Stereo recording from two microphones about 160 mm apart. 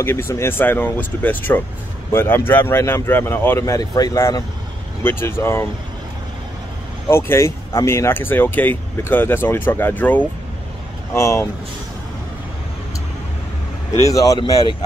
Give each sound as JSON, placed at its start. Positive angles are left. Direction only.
{"t": 0.0, "sound": "speech", "side_deg": 15}
{"t": 7.1, "sound": "speech", "side_deg": 15}
{"t": 14.0, "sound": "speech", "side_deg": 20}